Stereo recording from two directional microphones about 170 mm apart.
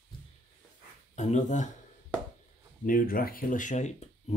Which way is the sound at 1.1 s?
45° left (ahead or behind).